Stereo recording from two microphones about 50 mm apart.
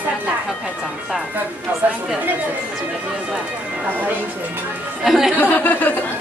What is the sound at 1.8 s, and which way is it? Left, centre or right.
Speech, right.